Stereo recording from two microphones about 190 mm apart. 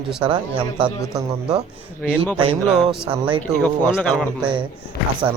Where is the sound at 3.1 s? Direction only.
25° right (ahead or behind).